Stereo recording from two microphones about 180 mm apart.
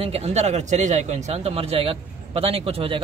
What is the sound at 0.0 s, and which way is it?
A man's voice, 35° right (ahead or behind).